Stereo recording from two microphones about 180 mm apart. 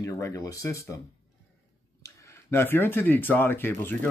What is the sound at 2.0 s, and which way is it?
Speech, 15° left (ahead or behind).